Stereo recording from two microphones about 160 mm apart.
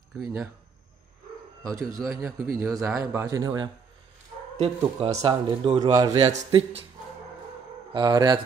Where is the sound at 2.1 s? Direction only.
20° right (ahead or behind).